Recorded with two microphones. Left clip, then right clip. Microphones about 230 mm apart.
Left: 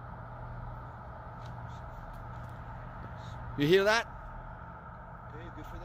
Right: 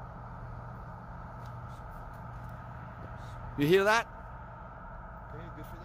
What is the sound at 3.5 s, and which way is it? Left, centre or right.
Speech, centre.